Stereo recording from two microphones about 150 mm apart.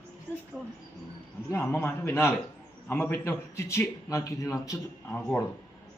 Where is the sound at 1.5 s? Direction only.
15° left (ahead or behind).